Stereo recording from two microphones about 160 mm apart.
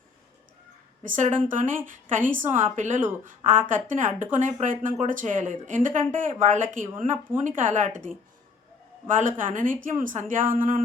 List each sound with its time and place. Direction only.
1.0 s a woman's voice: 55° right (ahead or behind)